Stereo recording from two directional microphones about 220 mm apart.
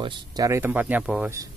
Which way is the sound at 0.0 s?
20° right (ahead or behind).